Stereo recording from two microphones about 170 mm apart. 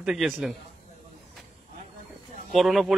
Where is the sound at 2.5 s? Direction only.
Centre (ahead or behind).